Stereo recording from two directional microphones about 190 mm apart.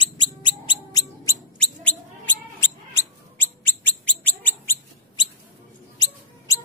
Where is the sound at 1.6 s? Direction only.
5° left (ahead or behind).